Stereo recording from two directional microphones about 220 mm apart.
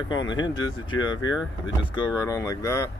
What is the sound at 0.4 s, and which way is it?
Speech, 20° left (ahead or behind).